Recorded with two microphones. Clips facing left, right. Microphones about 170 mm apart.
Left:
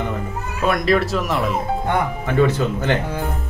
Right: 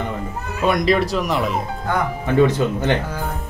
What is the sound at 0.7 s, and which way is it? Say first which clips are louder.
Speech: right 1 dB; centre (ahead or behind).